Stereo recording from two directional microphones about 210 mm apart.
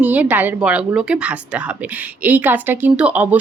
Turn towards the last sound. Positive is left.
turn(degrees=-5)  # may be behind; listen again after turning